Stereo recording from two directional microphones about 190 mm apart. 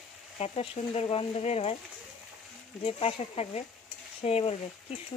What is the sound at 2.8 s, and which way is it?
Speech, 30° left (ahead or behind).